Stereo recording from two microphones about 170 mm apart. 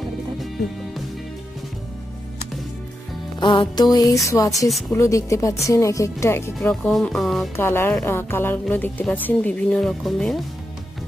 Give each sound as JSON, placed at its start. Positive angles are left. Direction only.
{"t": 3.3, "sound": "music", "side_deg": 25}
{"t": 5.7, "sound": "speech", "side_deg": 20}
{"t": 6.7, "sound": "speech", "side_deg": 0}
{"t": 7.5, "sound": "speech", "side_deg": 15}